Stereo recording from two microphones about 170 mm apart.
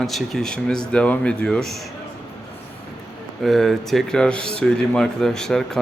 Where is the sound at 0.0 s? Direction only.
Centre (ahead or behind).